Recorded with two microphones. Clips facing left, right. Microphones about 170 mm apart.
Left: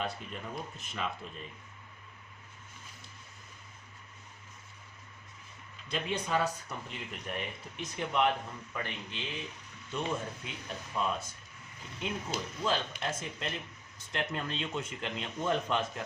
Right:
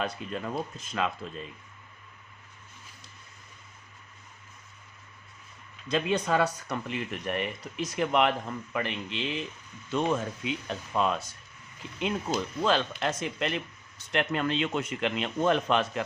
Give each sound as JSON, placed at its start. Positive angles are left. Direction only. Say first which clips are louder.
{"t": 0.0, "sound": "speech", "louder": "right 5 dB", "side_deg": -85}
{"t": 5.9, "sound": "speech", "louder": "right 6 dB", "side_deg": -80}